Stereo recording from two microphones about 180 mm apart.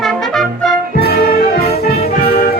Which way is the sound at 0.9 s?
60° left (ahead or behind).